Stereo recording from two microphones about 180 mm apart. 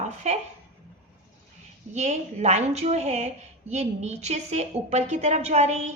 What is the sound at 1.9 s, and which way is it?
A woman's voice, 40° right (ahead or behind).